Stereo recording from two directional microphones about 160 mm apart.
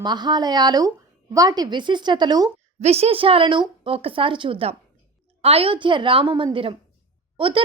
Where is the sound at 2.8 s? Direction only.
40° right (ahead or behind).